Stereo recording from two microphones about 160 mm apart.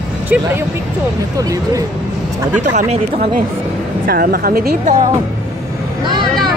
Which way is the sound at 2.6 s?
50° right (ahead or behind).